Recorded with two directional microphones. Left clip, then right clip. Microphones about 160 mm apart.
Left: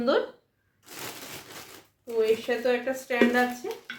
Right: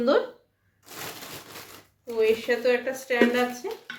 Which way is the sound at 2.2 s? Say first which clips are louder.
Right 2 dB; 25° right (ahead or behind).